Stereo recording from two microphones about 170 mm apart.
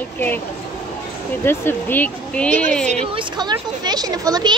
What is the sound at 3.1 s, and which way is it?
Speech, 25° right (ahead or behind).